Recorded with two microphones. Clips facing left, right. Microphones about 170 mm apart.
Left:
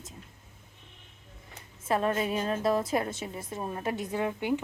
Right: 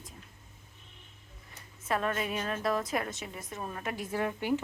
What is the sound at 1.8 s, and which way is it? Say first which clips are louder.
A woman's voice: left 4 dB; 30° left (ahead or behind).